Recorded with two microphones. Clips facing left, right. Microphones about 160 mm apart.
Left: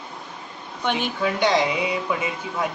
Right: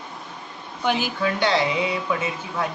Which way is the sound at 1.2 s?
15° left (ahead or behind).